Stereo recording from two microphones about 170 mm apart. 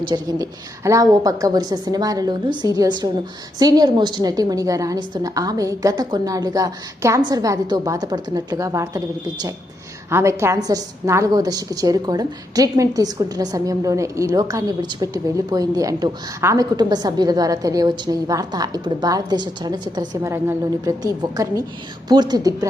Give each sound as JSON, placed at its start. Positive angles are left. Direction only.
{"t": 0.1, "sound": "a woman's voice", "side_deg": -25}
{"t": 10.1, "sound": "a woman's voice", "side_deg": -15}